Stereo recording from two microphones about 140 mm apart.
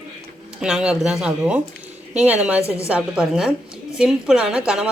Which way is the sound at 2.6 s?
20° left (ahead or behind).